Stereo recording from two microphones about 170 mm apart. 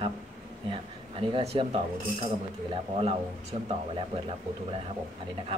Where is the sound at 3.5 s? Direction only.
35° right (ahead or behind).